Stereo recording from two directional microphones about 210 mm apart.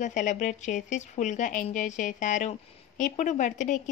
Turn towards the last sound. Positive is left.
turn(degrees=35)  # may be behind; listen again after turning